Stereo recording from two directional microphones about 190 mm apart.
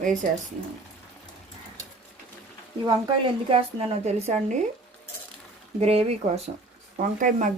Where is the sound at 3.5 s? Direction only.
30° right (ahead or behind).